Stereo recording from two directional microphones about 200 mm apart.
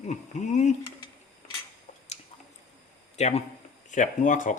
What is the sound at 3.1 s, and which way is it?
Speech, 35° left (ahead or behind).